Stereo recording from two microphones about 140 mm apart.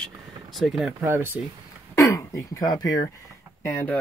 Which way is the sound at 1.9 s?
20° left (ahead or behind).